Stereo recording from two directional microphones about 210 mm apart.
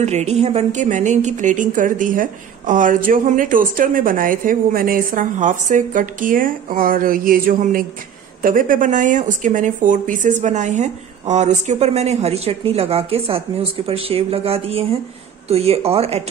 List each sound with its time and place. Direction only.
0.0 s a woman's voice: 30° right (ahead or behind)